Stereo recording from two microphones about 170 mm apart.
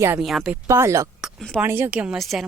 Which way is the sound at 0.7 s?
15° right (ahead or behind).